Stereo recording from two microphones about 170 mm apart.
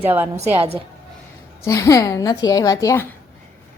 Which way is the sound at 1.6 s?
15° left (ahead or behind).